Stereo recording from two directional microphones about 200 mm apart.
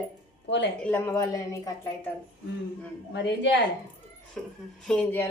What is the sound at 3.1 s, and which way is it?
Speech, 60° left (ahead or behind).